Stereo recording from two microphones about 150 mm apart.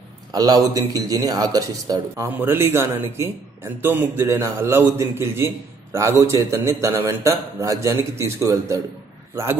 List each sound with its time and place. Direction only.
0.3 s a man's voice: 25° right (ahead or behind)
2.2 s a man's voice: 15° right (ahead or behind)